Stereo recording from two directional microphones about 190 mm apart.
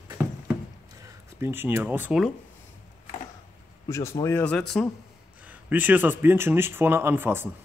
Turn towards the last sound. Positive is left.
turn(degrees=-10)  # may be behind; listen again after turning